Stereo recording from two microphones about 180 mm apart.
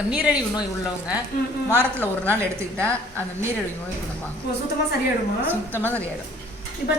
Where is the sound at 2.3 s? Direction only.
5° left (ahead or behind).